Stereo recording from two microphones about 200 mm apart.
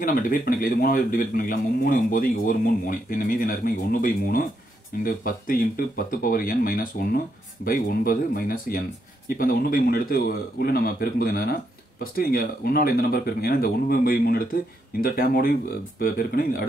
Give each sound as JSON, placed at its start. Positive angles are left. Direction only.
{"t": 0.0, "sound": "a man's voice", "side_deg": 45}